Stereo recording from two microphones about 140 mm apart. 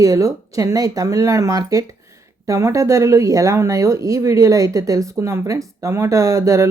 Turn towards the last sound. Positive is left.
turn(degrees=-20)  # may be behind; listen again after turning